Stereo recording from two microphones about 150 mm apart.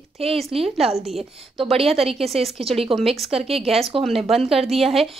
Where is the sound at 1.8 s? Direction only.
40° right (ahead or behind).